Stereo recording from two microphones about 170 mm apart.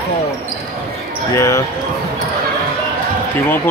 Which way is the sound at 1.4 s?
20° left (ahead or behind).